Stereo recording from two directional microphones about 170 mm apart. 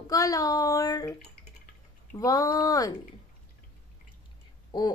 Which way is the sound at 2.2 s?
20° left (ahead or behind).